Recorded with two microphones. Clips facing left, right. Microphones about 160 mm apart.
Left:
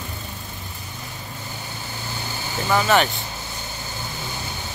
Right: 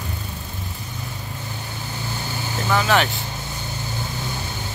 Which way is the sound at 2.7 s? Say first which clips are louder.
Left 1 dB; centre (ahead or behind).